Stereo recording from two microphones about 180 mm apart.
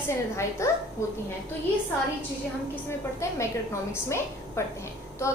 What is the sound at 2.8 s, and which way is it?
A woman's voice, 15° left (ahead or behind).